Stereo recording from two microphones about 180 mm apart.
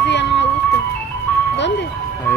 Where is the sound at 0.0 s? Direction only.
75° left (ahead or behind).